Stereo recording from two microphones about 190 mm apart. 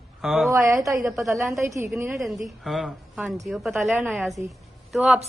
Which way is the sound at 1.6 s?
15° right (ahead or behind).